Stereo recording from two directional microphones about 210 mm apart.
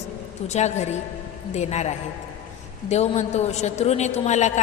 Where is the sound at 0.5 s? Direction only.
30° left (ahead or behind).